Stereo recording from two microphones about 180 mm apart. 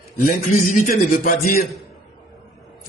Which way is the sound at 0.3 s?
45° left (ahead or behind).